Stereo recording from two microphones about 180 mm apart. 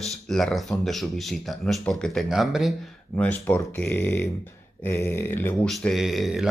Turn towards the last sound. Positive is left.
turn(degrees=0)  # may be behind; listen again after turning